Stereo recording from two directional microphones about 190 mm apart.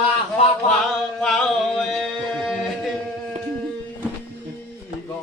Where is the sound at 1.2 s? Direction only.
Centre (ahead or behind).